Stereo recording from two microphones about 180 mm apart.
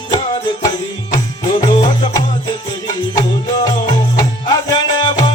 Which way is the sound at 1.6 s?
20° left (ahead or behind).